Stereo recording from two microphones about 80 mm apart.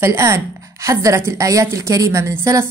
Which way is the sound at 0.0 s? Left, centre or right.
Right.